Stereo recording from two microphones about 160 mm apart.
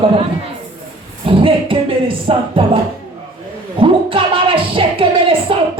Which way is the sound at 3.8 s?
35° right (ahead or behind).